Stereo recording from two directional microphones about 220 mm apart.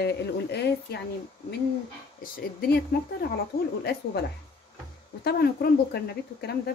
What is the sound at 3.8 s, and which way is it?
Speech, 45° left (ahead or behind).